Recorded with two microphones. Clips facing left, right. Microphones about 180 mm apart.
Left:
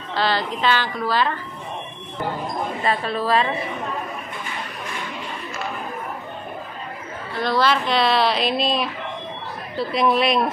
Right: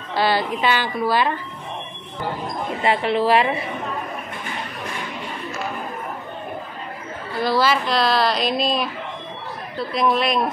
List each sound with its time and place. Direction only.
0.1 s a woman's voice: 10° right (ahead or behind)
2.8 s a woman's voice: 25° right (ahead or behind)
7.3 s a woman's voice: 5° right (ahead or behind)